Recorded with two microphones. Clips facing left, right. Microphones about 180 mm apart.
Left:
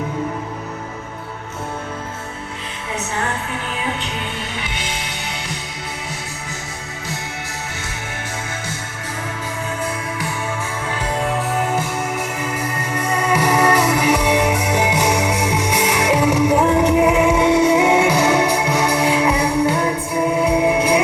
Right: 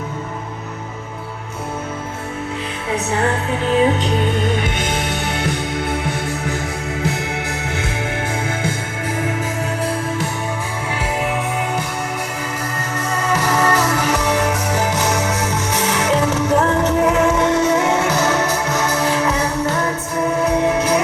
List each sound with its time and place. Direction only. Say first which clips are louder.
4.5 s music: right 7 dB; 50° right (ahead or behind)
11.2 s music: left 3 dB; centre (ahead or behind)
13.1 s music: left 2 dB; 10° left (ahead or behind)